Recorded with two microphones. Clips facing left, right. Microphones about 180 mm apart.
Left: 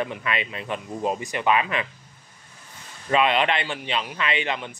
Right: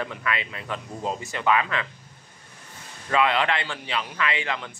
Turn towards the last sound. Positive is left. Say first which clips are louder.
# left 2 dB
turn(degrees=20)  # may be behind; listen again after turning